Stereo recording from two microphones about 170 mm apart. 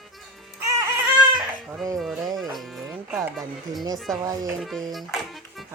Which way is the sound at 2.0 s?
Centre (ahead or behind).